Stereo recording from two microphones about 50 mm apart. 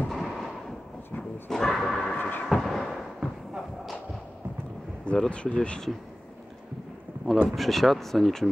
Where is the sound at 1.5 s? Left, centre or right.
Centre.